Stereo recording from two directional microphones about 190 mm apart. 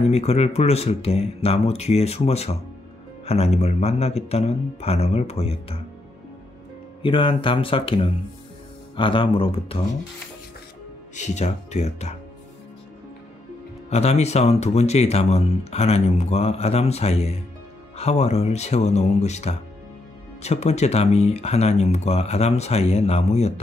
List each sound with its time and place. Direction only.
0.1 s speech: 35° left (ahead or behind)
7.0 s speech: 25° left (ahead or behind)
11.1 s speech: 35° left (ahead or behind)
13.8 s speech: 35° left (ahead or behind)